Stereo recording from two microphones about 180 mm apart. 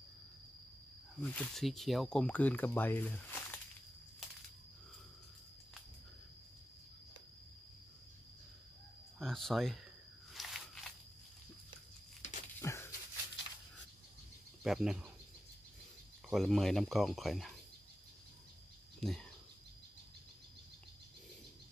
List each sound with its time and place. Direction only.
1.2 s speech: 5° left (ahead or behind)
9.2 s speech: centre (ahead or behind)
10.3 s walk: centre (ahead or behind)
12.2 s a sound: 45° left (ahead or behind)
12.5 s a sound: 15° left (ahead or behind)
14.6 s speech: centre (ahead or behind)
16.3 s speech: centre (ahead or behind)
18.9 s speech: 5° left (ahead or behind)